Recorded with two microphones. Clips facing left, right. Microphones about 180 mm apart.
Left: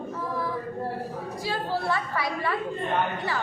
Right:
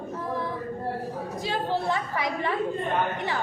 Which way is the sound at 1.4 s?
20° right (ahead or behind).